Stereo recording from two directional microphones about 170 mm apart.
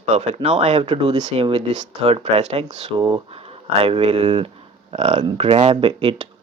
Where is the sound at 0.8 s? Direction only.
30° right (ahead or behind).